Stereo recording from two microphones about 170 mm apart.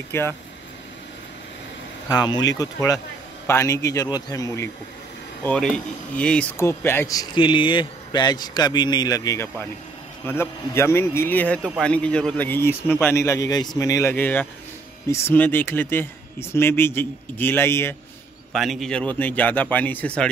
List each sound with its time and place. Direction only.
0.1 s speech: 15° left (ahead or behind)
2.0 s speech: 25° left (ahead or behind)
5.4 s speech: 5° left (ahead or behind)
18.5 s speech: centre (ahead or behind)